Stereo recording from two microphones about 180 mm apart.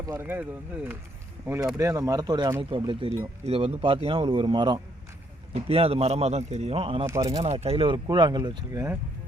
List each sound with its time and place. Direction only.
0.0 s speech: 15° right (ahead or behind)
1.8 s speech: 15° right (ahead or behind); by 7.1 s 30° right (ahead or behind)
7.1 s speech: 20° right (ahead or behind)
7.4 s speech: 35° right (ahead or behind); by 9.0 s 20° right (ahead or behind)